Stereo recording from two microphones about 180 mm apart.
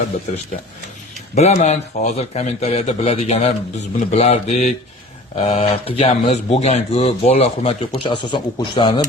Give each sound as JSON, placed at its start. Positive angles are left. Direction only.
{"t": 1.4, "sound": "speech", "side_deg": 40}